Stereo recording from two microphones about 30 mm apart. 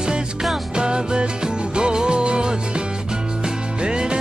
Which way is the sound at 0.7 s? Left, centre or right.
Right.